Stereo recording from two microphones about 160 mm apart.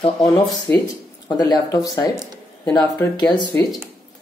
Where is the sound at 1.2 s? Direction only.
25° left (ahead or behind).